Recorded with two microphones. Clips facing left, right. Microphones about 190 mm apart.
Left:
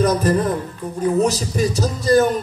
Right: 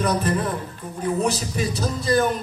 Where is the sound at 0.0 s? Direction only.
40° left (ahead or behind).